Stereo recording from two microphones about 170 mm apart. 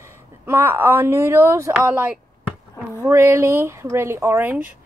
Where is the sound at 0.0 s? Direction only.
15° right (ahead or behind).